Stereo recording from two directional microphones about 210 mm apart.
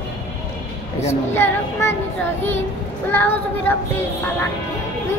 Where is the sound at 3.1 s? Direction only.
10° left (ahead or behind).